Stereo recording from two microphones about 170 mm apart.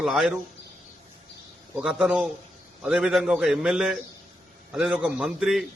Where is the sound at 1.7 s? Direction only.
5° right (ahead or behind).